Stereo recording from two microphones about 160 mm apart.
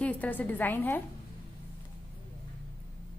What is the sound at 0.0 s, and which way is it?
A woman's voice, 10° left (ahead or behind).